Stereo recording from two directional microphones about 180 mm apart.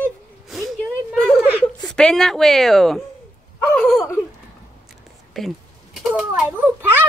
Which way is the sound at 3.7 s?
5° left (ahead or behind).